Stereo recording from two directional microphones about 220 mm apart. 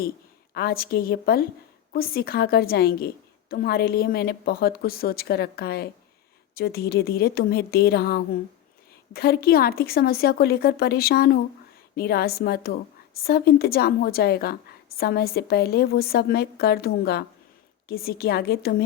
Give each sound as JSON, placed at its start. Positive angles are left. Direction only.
{"t": 0.5, "sound": "a woman's voice", "side_deg": 45}